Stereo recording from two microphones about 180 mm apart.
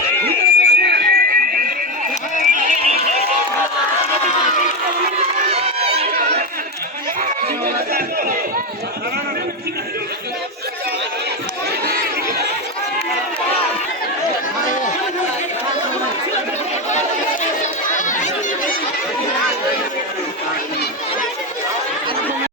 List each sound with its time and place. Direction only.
0.6 s fire alarm: 65° right (ahead or behind)
2.5 s run: 45° right (ahead or behind)
5.5 s run: 35° right (ahead or behind)
7.9 s chatter: 55° right (ahead or behind)
17.6 s crowd: 45° left (ahead or behind)